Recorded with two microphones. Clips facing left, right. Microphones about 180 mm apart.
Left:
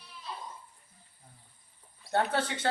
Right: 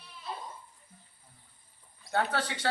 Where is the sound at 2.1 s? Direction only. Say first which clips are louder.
Left 2 dB; 25° left (ahead or behind).